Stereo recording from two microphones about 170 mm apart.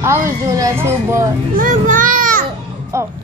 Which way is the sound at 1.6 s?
50° right (ahead or behind).